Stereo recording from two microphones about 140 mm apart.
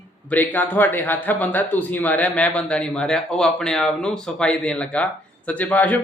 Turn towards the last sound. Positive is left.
turn(degrees=10)  # may be behind; listen again after turning